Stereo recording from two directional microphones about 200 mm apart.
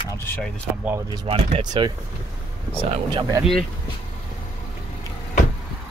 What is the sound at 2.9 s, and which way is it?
Speech, 20° right (ahead or behind).